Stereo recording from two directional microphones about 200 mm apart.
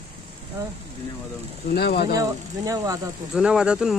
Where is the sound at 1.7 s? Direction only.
55° left (ahead or behind).